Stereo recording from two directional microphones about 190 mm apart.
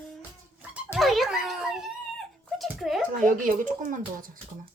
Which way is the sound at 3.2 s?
45° right (ahead or behind).